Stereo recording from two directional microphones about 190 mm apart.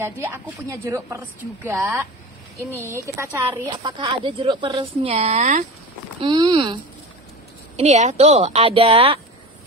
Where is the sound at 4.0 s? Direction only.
30° right (ahead or behind).